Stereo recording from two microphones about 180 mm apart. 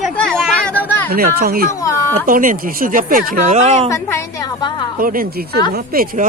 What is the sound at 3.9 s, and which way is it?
Speech, 20° left (ahead or behind).